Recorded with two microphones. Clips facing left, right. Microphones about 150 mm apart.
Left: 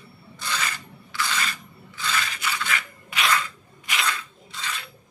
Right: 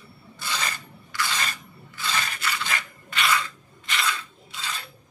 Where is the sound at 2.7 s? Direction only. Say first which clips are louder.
Left 1 dB; 40° right (ahead or behind).